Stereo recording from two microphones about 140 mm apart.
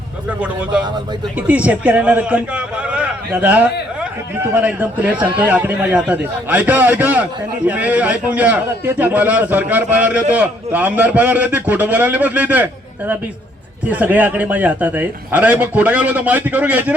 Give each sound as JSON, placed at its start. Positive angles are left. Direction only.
{"t": 0.3, "sound": "a man's voice", "side_deg": -5}